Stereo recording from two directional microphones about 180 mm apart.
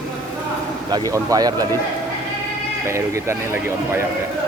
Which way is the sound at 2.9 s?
15° right (ahead or behind).